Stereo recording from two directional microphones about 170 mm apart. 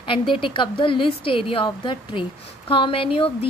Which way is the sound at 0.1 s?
30° left (ahead or behind).